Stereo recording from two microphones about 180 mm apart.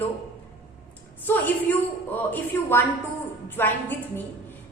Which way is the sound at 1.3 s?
10° left (ahead or behind).